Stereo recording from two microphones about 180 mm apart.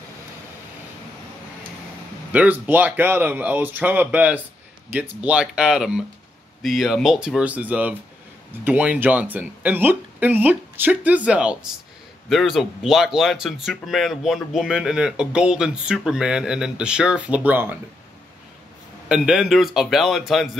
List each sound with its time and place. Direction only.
2.3 s speech: 10° right (ahead or behind)
19.0 s speech: 5° right (ahead or behind)